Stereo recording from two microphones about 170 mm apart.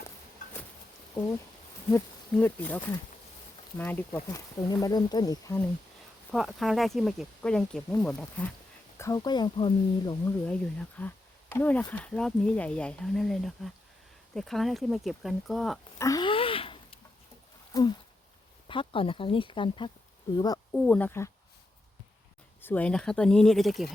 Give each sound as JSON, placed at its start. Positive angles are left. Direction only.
{"t": 2.4, "sound": "speech", "side_deg": 10}
{"t": 6.3, "sound": "speech", "side_deg": 0}
{"t": 9.0, "sound": "speech", "side_deg": 20}
{"t": 10.2, "sound": "speech", "side_deg": 10}
{"t": 16.0, "sound": "a sound", "side_deg": 20}
{"t": 17.7, "sound": "speech", "side_deg": 20}
{"t": 20.7, "sound": "speech", "side_deg": 5}
{"t": 22.6, "sound": "speech", "side_deg": 10}